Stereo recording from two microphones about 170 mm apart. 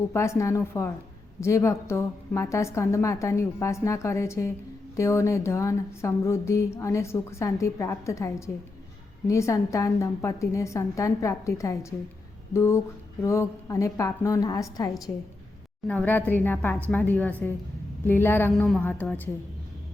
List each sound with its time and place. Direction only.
0.1 s a woman's voice: 15° left (ahead or behind)
15.9 s speech: 10° left (ahead or behind)
18.5 s a woman's voice: centre (ahead or behind)